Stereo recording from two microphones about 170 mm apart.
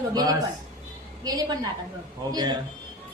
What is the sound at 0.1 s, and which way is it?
A man's voice, 20° right (ahead or behind).